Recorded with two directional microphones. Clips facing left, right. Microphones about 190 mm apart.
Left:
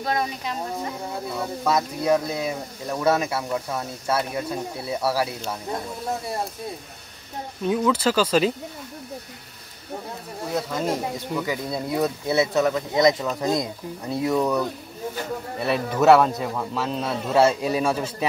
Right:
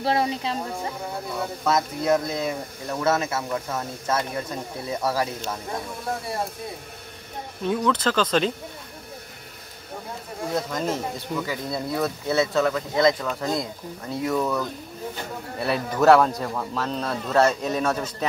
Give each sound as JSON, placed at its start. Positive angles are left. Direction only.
{"t": 0.0, "sound": "speech", "side_deg": -30}
{"t": 1.6, "sound": "speech", "side_deg": 10}
{"t": 7.6, "sound": "speech", "side_deg": 5}
{"t": 10.5, "sound": "speech", "side_deg": 10}
{"t": 15.6, "sound": "speech", "side_deg": 0}